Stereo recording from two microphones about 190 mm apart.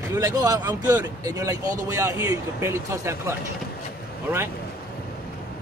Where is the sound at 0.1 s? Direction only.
20° right (ahead or behind).